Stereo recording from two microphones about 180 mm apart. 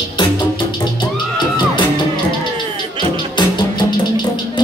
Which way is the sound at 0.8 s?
25° left (ahead or behind).